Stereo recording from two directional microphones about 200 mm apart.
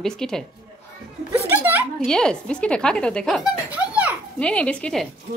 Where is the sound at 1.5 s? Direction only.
10° right (ahead or behind).